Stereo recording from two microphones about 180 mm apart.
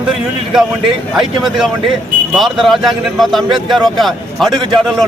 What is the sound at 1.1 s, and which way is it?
Speech, centre (ahead or behind).